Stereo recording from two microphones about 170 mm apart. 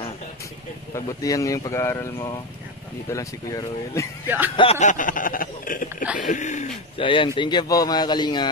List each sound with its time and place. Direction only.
0.9 s a man's voice: 20° left (ahead or behind)
4.6 s speech: 40° left (ahead or behind)
7.0 s a man's voice: 30° left (ahead or behind)